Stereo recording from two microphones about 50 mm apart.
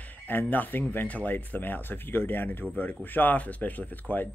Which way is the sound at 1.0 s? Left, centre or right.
Left.